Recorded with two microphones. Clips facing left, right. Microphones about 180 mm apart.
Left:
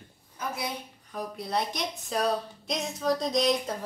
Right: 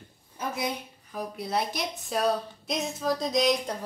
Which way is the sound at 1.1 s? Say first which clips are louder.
Right 1 dB; centre (ahead or behind).